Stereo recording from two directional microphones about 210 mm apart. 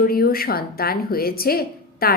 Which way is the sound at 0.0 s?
45° left (ahead or behind).